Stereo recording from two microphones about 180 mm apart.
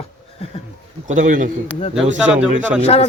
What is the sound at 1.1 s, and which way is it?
Speech, 45° right (ahead or behind).